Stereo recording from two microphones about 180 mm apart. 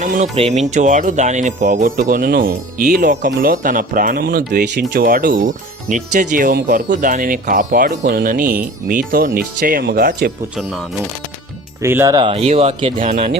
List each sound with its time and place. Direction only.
0.0 s speech: 40° right (ahead or behind)
10.6 s speech: centre (ahead or behind)
11.8 s speech: 15° right (ahead or behind)
12.2 s speech: 35° right (ahead or behind)
13.1 s speech: 45° right (ahead or behind)